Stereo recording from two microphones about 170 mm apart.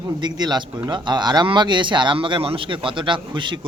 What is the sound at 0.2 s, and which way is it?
Speech, 25° right (ahead or behind).